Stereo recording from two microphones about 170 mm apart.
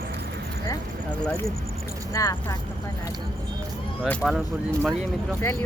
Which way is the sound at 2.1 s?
15° left (ahead or behind).